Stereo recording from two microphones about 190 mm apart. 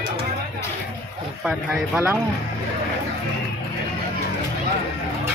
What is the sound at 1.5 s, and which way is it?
Speech, 5° right (ahead or behind).